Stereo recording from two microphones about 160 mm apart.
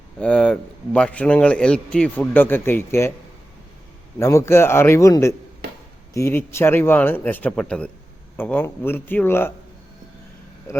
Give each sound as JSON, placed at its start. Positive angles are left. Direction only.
{"t": 0.2, "sound": "a man's voice", "side_deg": 5}
{"t": 4.2, "sound": "a man's voice", "side_deg": 15}